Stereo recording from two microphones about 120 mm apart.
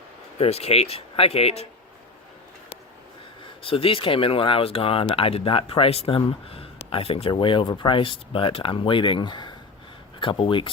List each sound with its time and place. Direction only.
0.3 s speech: 55° left (ahead or behind)
3.6 s speech: 50° left (ahead or behind)